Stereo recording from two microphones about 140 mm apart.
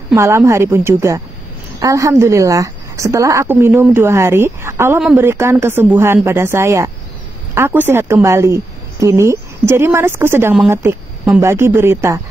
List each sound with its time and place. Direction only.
0.1 s a woman's voice: 20° right (ahead or behind)